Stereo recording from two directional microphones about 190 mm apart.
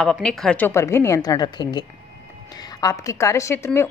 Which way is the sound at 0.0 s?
Centre (ahead or behind).